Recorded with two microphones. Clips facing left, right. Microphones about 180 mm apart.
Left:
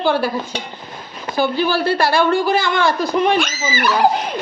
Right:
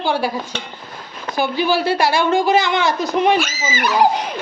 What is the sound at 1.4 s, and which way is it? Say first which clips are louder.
A woman's voice: left 1 dB; 15° right (ahead or behind).